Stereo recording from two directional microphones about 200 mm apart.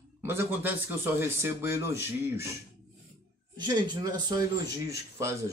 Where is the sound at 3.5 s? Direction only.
20° right (ahead or behind).